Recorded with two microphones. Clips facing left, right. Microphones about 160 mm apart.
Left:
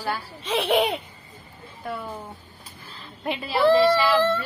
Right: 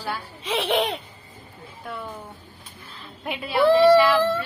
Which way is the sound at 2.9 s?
Centre (ahead or behind).